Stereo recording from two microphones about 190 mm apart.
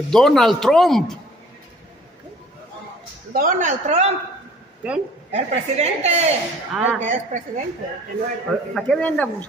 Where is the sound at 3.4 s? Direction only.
45° right (ahead or behind).